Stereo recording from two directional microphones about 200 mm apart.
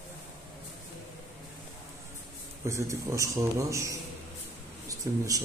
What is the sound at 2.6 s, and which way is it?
A man's voice, 15° right (ahead or behind).